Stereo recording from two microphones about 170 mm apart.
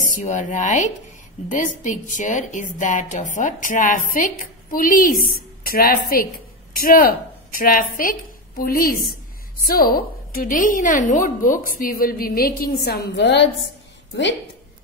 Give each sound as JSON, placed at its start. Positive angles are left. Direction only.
{"t": 0.0, "sound": "a woman's voice", "side_deg": 50}